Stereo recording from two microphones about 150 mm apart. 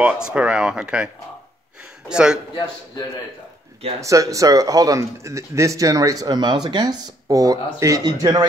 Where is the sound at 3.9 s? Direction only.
20° right (ahead or behind).